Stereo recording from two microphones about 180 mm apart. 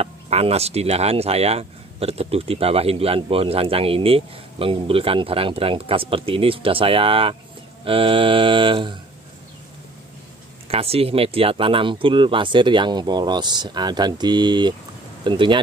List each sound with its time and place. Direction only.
0.0 s speech: 35° right (ahead or behind)
10.7 s speech: 35° right (ahead or behind)